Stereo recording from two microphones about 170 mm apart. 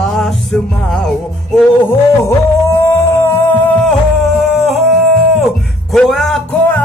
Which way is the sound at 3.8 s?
Centre (ahead or behind).